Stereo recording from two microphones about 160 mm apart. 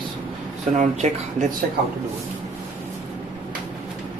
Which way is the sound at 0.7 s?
45° right (ahead or behind).